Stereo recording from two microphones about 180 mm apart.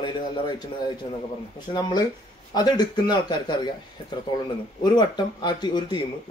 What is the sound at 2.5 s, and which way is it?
A man's voice, 25° left (ahead or behind).